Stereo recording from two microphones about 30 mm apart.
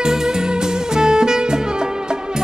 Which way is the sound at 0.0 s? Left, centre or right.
Right.